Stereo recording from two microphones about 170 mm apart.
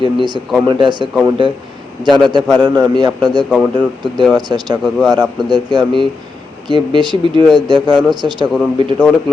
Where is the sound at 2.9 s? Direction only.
25° right (ahead or behind).